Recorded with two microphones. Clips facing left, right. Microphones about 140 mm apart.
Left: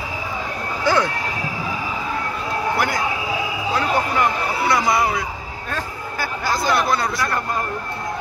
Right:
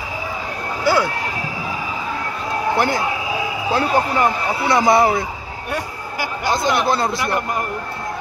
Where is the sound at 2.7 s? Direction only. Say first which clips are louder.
Right 3 dB; 30° right (ahead or behind).